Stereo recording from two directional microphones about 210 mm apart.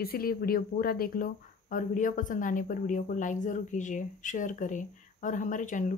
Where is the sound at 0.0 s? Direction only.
45° left (ahead or behind).